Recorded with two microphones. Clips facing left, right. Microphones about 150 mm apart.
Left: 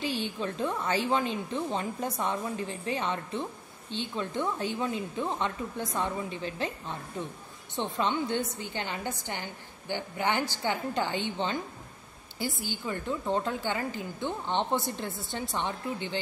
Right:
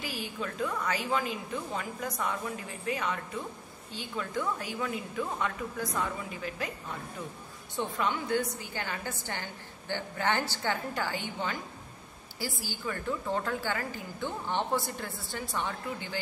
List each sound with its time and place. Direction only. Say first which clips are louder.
0.0 s a woman's voice: left 5 dB; 30° left (ahead or behind)